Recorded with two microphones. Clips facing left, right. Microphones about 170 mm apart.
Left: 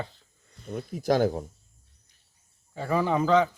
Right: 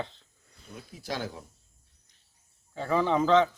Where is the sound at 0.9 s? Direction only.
50° left (ahead or behind).